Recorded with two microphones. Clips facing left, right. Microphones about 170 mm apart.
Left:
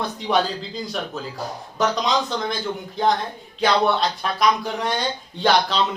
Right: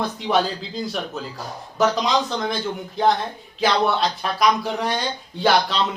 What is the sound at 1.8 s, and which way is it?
Speech, centre (ahead or behind).